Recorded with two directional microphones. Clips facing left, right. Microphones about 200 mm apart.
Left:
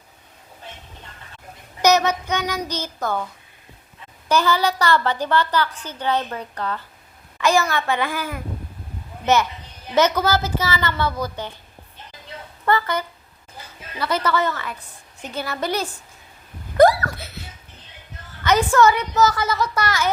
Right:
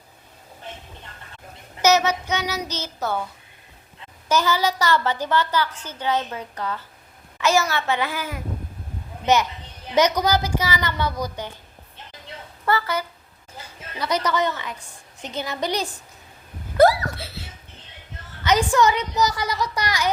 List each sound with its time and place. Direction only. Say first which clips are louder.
2.0 s child singing: left 1 dB; 10° right (ahead or behind)
2.4 s a woman's voice: left 2 dB; 10° right (ahead or behind)
2.6 s speech: left 3 dB; 10° left (ahead or behind)
3.0 s a woman's voice: left 1 dB; 10° right (ahead or behind)
4.3 s a woman's voice: left 2 dB; 10° right (ahead or behind)
12.6 s a woman's voice: left 2 dB; 10° right (ahead or behind)
16.7 s a sound: left 2 dB; 10° right (ahead or behind)
17.2 s dog: right 1 dB; 30° right (ahead or behind)
18.4 s a woman's voice: left 2 dB; 15° right (ahead or behind)